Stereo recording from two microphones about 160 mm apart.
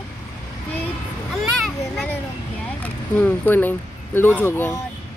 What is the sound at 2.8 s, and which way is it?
Speech, 10° left (ahead or behind).